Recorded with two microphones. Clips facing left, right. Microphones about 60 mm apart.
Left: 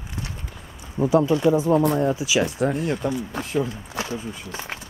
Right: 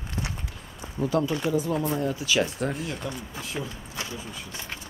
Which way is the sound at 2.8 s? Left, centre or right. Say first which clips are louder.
Left 8 dB; left.